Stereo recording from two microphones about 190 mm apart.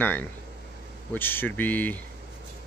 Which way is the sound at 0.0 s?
10° left (ahead or behind).